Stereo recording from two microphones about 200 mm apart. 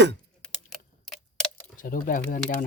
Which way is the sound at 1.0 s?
Centre (ahead or behind).